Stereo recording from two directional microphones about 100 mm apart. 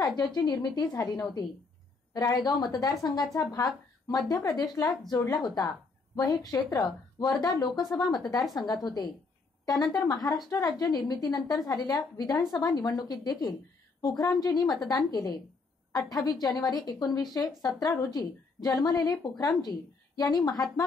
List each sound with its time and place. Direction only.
0.0 s a woman's voice: 40° left (ahead or behind)